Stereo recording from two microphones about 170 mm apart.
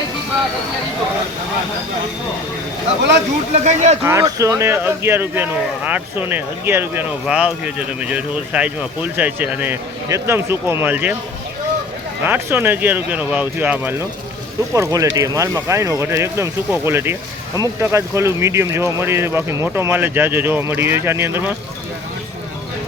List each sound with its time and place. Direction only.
3.5 s speech: 45° right (ahead or behind)
4.0 s speech: 15° right (ahead or behind)
12.2 s speech: 15° right (ahead or behind)